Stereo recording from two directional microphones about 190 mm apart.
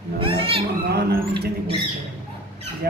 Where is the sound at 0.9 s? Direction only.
60° right (ahead or behind).